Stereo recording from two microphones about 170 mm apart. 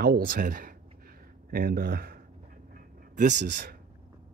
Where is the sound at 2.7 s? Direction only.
50° right (ahead or behind).